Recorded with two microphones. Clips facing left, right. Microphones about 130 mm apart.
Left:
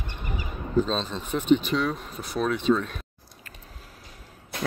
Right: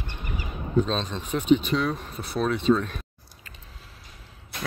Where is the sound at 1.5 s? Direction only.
Centre (ahead or behind).